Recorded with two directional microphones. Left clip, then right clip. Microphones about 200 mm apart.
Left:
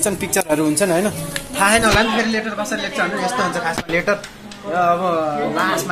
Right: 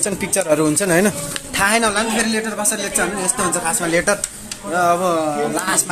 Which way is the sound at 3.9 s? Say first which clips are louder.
Right 1 dB; 10° right (ahead or behind).